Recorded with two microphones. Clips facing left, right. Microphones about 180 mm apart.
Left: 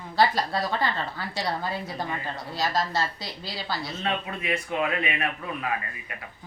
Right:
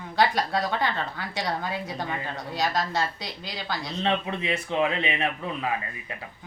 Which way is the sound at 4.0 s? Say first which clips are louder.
Right 7 dB; 25° right (ahead or behind).